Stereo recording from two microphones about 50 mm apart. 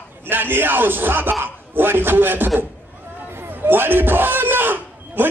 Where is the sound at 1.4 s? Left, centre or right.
Right.